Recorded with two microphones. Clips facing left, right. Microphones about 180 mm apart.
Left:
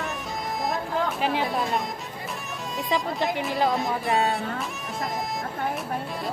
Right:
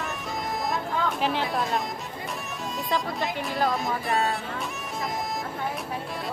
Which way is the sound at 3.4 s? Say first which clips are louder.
Left 1 dB; centre (ahead or behind).